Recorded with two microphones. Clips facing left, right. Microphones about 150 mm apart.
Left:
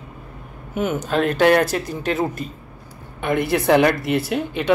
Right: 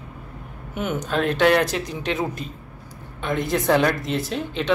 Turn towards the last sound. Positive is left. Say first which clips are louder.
# left 3 dB
turn(degrees=10)  # may be behind; listen again after turning